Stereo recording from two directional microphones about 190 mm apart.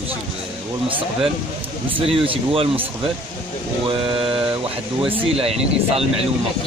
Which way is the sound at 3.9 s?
25° right (ahead or behind).